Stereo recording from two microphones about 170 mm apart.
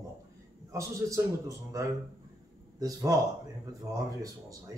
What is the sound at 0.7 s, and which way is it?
Speech, 20° right (ahead or behind).